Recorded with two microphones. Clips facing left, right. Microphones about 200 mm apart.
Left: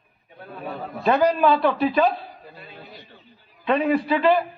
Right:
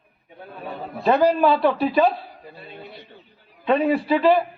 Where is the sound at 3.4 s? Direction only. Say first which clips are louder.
Right 3 dB; 60° right (ahead or behind).